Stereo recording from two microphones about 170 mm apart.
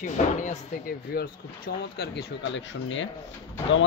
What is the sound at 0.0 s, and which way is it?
Speech, 45° left (ahead or behind).